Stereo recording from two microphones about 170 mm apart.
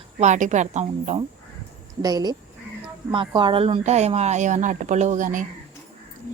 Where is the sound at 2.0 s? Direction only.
25° right (ahead or behind); by 5.4 s 50° right (ahead or behind).